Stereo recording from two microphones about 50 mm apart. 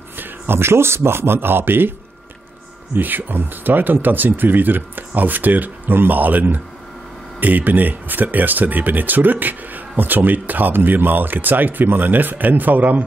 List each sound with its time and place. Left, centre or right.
0.2 s speech: right